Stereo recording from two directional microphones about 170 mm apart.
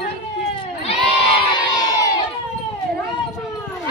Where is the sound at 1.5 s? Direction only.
25° left (ahead or behind).